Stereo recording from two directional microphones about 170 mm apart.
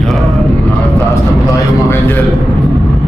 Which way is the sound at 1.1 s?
15° left (ahead or behind).